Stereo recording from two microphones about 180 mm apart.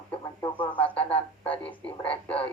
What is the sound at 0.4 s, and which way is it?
Speech, 30° left (ahead or behind).